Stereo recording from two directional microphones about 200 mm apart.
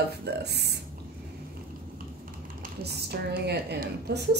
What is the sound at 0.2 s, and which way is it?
Speech, 55° right (ahead or behind).